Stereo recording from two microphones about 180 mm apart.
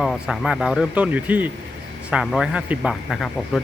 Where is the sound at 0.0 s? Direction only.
Centre (ahead or behind).